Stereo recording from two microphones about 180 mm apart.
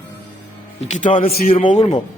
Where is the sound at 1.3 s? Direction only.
55° left (ahead or behind).